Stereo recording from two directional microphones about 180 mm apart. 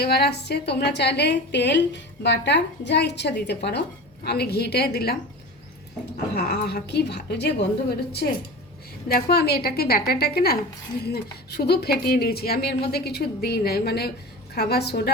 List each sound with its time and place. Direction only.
0.0 s a woman's voice: 65° left (ahead or behind)
6.3 s a woman's voice: 65° left (ahead or behind)
9.0 s a woman's voice: 60° left (ahead or behind)